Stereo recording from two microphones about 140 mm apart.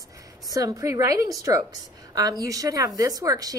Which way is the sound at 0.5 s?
25° right (ahead or behind).